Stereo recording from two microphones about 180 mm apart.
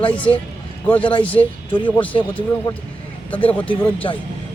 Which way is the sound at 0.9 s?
30° left (ahead or behind).